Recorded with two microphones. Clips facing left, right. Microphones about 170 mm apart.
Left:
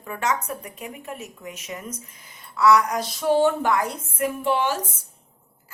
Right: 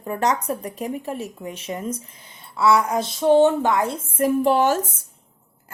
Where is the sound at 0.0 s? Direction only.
35° right (ahead or behind).